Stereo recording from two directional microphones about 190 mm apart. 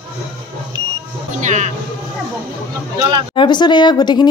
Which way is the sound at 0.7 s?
25° right (ahead or behind).